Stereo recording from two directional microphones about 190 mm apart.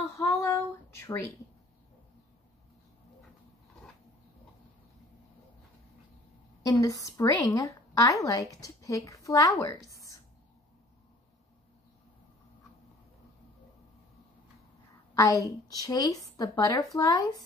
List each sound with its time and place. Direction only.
0.3 s a sound: 15° left (ahead or behind)
6.6 s a woman's voice: 20° left (ahead or behind)
15.1 s a woman's voice: 15° left (ahead or behind)